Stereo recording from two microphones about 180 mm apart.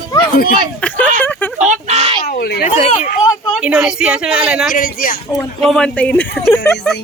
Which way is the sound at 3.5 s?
5° right (ahead or behind).